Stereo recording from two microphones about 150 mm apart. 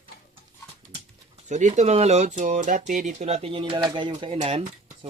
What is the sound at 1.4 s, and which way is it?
Speech, 50° right (ahead or behind).